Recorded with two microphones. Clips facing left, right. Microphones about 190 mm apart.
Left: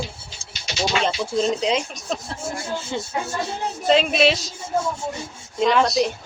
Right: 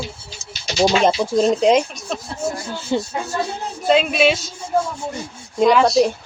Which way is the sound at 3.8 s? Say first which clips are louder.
Right 2 dB; centre (ahead or behind).